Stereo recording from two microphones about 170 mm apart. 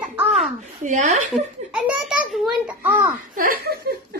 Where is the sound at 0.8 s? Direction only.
45° right (ahead or behind).